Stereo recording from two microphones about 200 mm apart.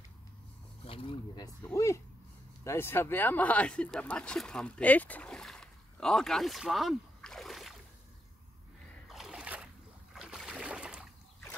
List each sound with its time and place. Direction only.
0.8 s speech: 25° left (ahead or behind); by 7.7 s centre (ahead or behind)
9.1 s splash: 5° right (ahead or behind)
10.1 s a sound: 5° right (ahead or behind)